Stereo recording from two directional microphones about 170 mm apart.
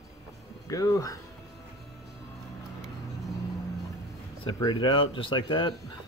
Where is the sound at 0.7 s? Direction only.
20° left (ahead or behind).